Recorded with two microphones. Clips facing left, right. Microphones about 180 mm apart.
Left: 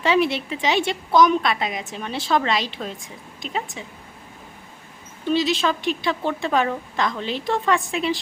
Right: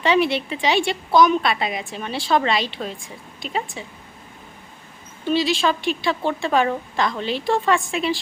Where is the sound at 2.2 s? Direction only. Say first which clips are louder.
Right 2 dB; 25° right (ahead or behind).